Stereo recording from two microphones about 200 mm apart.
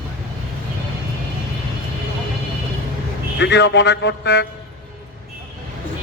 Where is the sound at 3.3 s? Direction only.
60° left (ahead or behind).